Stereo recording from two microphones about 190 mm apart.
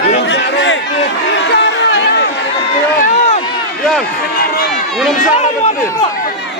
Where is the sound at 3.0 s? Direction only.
35° left (ahead or behind).